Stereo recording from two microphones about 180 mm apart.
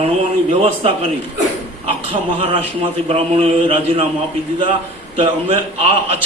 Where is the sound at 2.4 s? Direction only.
30° right (ahead or behind).